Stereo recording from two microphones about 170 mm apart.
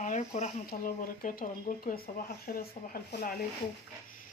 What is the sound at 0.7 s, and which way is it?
Speech, 55° left (ahead or behind).